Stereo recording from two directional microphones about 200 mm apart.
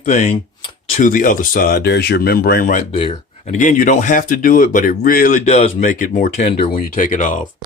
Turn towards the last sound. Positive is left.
turn(degrees=40)  # may be behind; listen again after turning